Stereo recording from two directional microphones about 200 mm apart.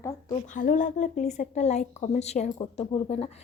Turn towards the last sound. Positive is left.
turn(degrees=30)  # may be behind; listen again after turning